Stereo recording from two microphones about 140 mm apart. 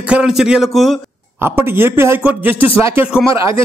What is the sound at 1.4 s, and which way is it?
Speech, 15° right (ahead or behind).